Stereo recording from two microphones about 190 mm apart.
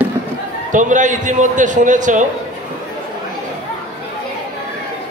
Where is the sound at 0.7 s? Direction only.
40° right (ahead or behind).